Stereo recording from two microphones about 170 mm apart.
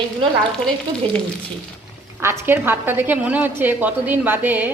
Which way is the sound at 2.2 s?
15° right (ahead or behind).